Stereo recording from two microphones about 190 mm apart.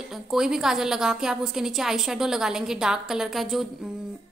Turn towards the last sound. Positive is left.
turn(degrees=0)  # may be behind; listen again after turning